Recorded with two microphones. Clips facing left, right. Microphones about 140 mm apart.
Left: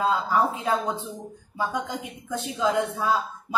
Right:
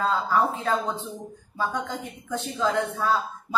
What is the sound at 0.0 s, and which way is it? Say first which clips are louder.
Speech: even; 10° left (ahead or behind).